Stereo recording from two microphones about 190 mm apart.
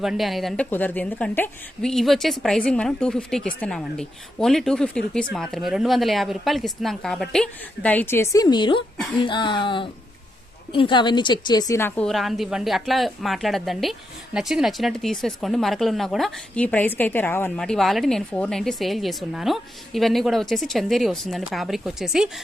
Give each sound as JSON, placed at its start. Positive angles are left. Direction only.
{"t": 0.0, "sound": "speech", "side_deg": 0}